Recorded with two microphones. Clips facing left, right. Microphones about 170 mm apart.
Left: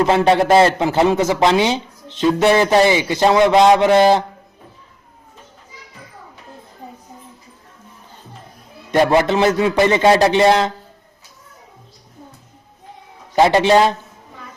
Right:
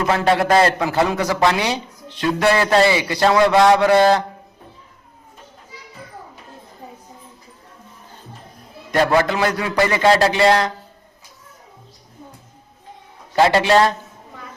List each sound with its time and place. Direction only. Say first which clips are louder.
0.0 s speech: left 4 dB; 20° left (ahead or behind)
8.9 s speech: left 3 dB; 20° left (ahead or behind)
13.3 s speech: left 2 dB; 20° left (ahead or behind)